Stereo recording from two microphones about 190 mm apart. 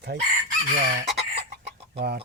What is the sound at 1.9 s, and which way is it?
Speech, 60° right (ahead or behind).